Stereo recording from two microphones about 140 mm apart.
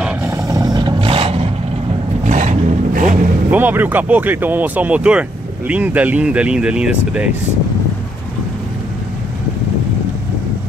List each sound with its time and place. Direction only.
0.3 s vehicle: 25° right (ahead or behind); by 1.5 s 45° right (ahead or behind)
2.2 s a sound: 60° right (ahead or behind)
3.4 s speech: 15° right (ahead or behind)